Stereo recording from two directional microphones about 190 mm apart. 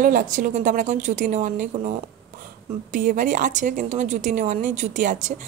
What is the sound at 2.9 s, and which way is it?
Speech, 45° right (ahead or behind).